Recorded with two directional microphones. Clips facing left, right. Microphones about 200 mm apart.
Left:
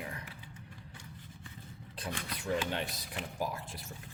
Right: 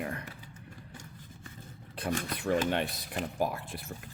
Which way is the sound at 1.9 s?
55° right (ahead or behind).